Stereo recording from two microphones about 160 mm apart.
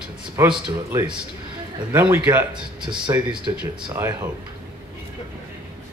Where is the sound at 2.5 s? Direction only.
30° right (ahead or behind).